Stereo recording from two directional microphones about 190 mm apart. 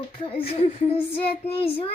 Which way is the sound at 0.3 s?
30° left (ahead or behind).